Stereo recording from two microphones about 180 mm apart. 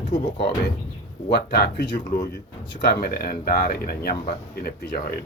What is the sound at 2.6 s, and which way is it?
Speech, 75° left (ahead or behind).